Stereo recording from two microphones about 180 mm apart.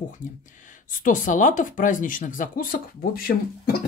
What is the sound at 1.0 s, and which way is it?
Speech, 45° left (ahead or behind).